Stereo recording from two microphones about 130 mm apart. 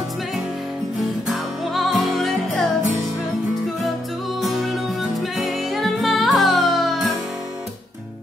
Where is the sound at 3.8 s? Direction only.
Centre (ahead or behind).